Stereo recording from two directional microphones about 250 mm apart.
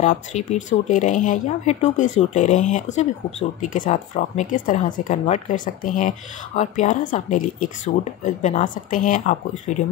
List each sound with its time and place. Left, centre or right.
0.0 s speech: left